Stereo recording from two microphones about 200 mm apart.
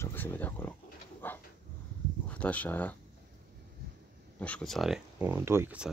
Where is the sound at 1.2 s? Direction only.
10° left (ahead or behind).